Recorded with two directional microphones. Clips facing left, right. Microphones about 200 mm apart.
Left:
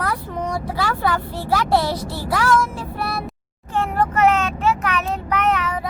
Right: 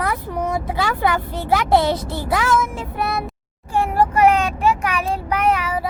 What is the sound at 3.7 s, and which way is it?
Vehicle, 10° right (ahead or behind).